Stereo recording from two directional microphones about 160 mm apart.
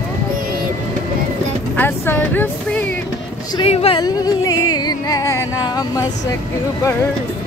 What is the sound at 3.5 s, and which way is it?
Speech, 35° left (ahead or behind).